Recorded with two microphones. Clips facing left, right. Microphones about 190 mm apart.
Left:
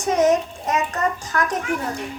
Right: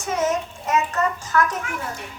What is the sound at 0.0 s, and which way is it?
A child's voice, 35° left (ahead or behind).